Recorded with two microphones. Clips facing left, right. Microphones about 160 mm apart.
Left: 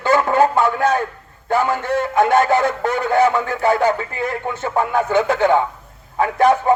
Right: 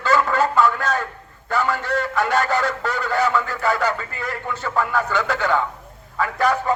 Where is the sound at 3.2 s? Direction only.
25° left (ahead or behind).